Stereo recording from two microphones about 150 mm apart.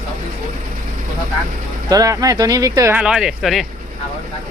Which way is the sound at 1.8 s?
25° right (ahead or behind).